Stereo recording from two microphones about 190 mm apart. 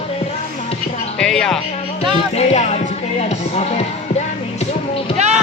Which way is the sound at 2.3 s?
35° left (ahead or behind).